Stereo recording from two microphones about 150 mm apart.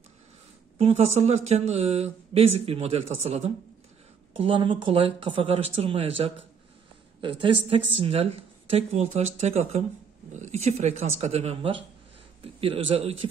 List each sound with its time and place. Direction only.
0.7 s speech: 45° right (ahead or behind)